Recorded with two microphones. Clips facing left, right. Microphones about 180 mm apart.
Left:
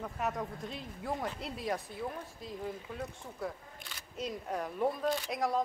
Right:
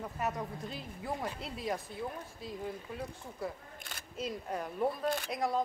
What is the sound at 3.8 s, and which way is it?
Single-lens reflex camera, 50° right (ahead or behind).